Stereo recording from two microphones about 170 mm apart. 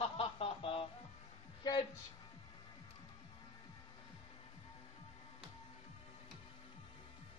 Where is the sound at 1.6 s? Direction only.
25° left (ahead or behind).